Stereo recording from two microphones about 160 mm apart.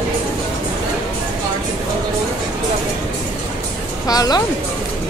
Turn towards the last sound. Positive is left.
turn(degrees=25)  # may be behind; listen again after turning